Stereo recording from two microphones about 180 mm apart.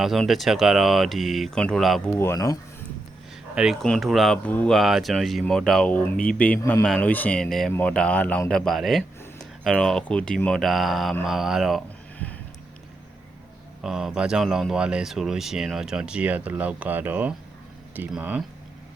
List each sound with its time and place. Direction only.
0.0 s speech: centre (ahead or behind)
2.1 s speech: 15° left (ahead or behind)
3.5 s speech: 5° right (ahead or behind); by 6.8 s 15° left (ahead or behind)
6.8 s speech: 5° left (ahead or behind)
13.8 s speech: 5° right (ahead or behind)